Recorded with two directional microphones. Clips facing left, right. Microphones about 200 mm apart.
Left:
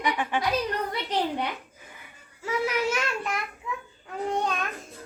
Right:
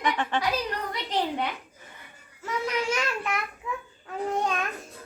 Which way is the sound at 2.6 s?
Centre (ahead or behind).